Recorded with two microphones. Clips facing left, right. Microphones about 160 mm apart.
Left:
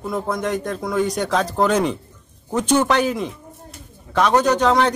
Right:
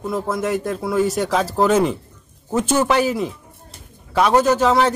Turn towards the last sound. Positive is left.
turn(degrees=-5)  # may be behind; listen again after turning